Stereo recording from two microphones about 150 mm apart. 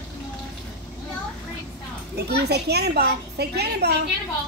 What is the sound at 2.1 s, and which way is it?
A woman's voice, 90° right.